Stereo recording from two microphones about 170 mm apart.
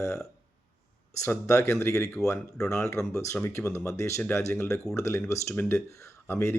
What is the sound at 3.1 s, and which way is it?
Speech, 15° left (ahead or behind).